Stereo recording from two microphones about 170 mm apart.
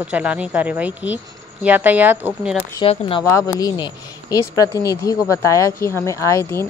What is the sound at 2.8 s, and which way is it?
Speech, 30° left (ahead or behind).